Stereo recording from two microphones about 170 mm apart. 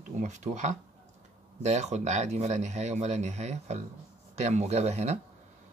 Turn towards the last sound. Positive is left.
turn(degrees=-40)  # may be behind; listen again after turning